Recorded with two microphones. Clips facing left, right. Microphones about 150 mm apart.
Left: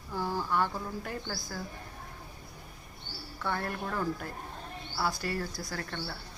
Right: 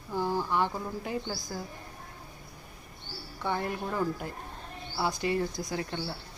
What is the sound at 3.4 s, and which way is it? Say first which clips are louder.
Speech: right 2 dB; 15° right (ahead or behind).